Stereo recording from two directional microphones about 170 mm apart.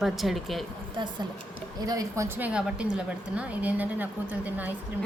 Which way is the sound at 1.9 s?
20° right (ahead or behind).